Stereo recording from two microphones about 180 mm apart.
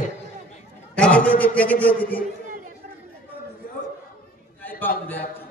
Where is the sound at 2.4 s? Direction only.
45° right (ahead or behind).